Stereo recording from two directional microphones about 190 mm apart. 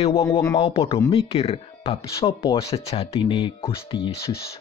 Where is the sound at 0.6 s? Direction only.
30° left (ahead or behind).